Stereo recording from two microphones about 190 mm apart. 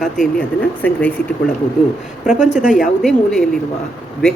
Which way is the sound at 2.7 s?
Centre (ahead or behind).